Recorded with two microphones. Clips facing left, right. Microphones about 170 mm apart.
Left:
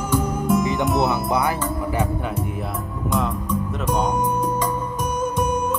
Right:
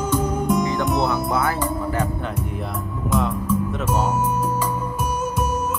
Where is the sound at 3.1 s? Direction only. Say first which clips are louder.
Right 2 dB; centre (ahead or behind).